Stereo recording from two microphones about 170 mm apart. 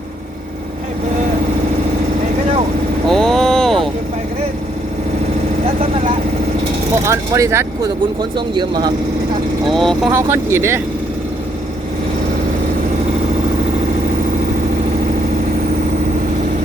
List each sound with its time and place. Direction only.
3.1 s vehicle: centre (ahead or behind)
7.0 s speech: 20° right (ahead or behind)
9.6 s speech: centre (ahead or behind)
10.1 s speech: 15° right (ahead or behind)